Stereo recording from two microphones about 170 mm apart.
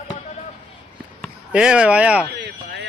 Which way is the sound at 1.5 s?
5° right (ahead or behind).